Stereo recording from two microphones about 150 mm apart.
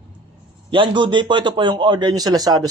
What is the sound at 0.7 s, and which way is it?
A man's voice, 30° right (ahead or behind).